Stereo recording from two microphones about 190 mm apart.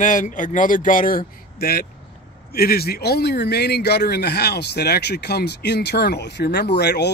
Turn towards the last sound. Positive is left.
turn(degrees=60)  # may be behind; listen again after turning